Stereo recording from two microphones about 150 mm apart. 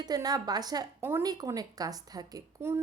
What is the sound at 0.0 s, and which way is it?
Speech, 25° right (ahead or behind).